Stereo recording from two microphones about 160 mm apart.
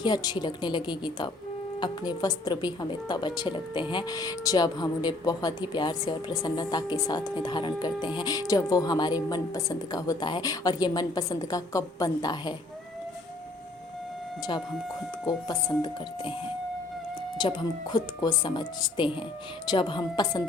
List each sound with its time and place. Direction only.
0.0 s speech: 25° left (ahead or behind)
15.3 s speech: 25° left (ahead or behind)
17.3 s speech: 30° left (ahead or behind)